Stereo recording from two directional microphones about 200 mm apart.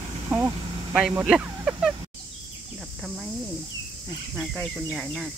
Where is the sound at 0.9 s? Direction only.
5° right (ahead or behind).